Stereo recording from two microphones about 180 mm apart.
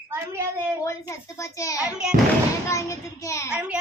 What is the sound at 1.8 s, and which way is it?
Speech, 5° right (ahead or behind).